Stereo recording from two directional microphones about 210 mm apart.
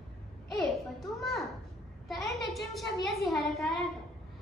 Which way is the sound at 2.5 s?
Centre (ahead or behind).